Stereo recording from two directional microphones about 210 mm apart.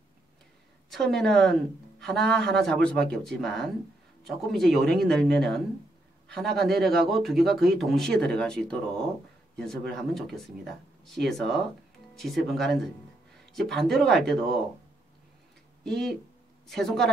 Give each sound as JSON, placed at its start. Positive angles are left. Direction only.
{"t": 1.1, "sound": "speech", "side_deg": 0}
{"t": 15.8, "sound": "speech", "side_deg": 0}